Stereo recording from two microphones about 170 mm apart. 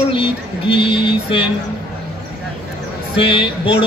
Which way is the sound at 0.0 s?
30° left (ahead or behind).